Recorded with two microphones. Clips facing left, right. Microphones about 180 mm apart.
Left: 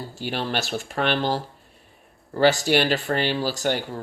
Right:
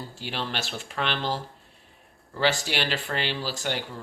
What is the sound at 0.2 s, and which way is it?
Speech, 50° left (ahead or behind).